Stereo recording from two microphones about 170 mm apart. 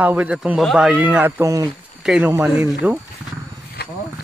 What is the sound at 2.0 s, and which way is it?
Speech, 5° right (ahead or behind).